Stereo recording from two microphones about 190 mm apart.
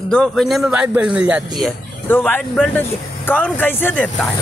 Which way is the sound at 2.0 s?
10° left (ahead or behind).